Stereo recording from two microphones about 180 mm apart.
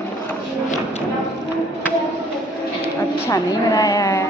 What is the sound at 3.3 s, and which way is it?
Speech, 20° left (ahead or behind).